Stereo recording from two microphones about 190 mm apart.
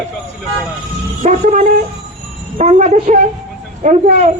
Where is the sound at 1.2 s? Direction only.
40° right (ahead or behind).